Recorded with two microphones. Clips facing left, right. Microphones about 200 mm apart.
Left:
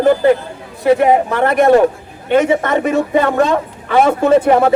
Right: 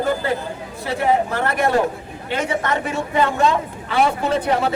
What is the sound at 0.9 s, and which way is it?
A woman's voice, 55° left (ahead or behind).